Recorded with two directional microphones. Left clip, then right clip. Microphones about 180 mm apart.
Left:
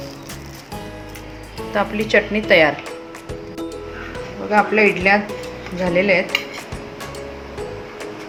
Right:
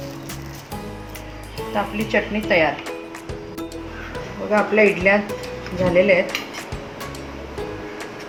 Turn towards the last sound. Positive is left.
turn(degrees=15)  # may be behind; listen again after turning